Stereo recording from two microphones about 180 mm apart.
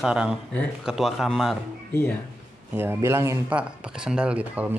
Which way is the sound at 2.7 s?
10° right (ahead or behind).